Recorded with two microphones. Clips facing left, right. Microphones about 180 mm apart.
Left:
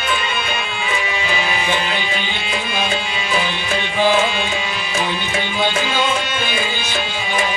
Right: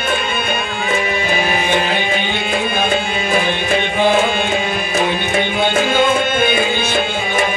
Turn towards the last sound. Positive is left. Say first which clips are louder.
# right 4 dB
turn(degrees=-50)  # may be behind; listen again after turning